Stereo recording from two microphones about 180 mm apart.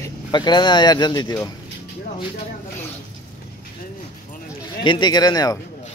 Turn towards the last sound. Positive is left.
turn(degrees=20)  # may be behind; listen again after turning